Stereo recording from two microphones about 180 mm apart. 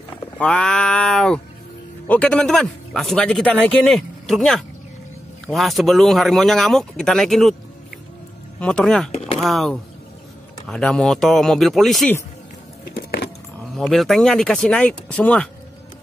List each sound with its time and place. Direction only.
0.4 s speech: 5° left (ahead or behind)
8.5 s speech: 5° left (ahead or behind)
12.9 s keys jangling: 65° left (ahead or behind)
13.7 s speech: centre (ahead or behind)